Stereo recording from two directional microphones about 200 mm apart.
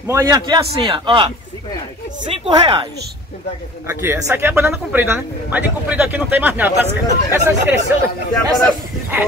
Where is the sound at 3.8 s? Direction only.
10° right (ahead or behind).